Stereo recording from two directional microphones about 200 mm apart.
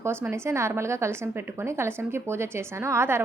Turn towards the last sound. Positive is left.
turn(degrees=-15)  # may be behind; listen again after turning